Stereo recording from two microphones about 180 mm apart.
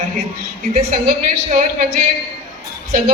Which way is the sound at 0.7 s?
45° right (ahead or behind).